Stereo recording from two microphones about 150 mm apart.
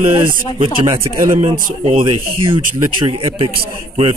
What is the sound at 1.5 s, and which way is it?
Speech, 65° right (ahead or behind).